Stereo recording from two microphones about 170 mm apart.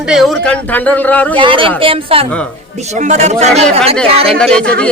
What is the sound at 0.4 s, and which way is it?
Speech, 10° left (ahead or behind).